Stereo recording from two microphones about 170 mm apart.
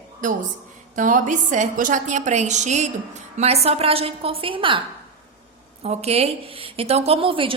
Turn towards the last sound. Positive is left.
turn(degrees=-30)  # may be behind; listen again after turning